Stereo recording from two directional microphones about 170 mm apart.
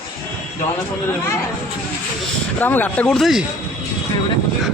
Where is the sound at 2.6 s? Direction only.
10° left (ahead or behind).